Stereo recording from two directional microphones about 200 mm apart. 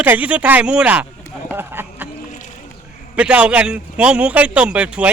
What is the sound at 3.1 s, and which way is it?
A man's voice, 5° right (ahead or behind).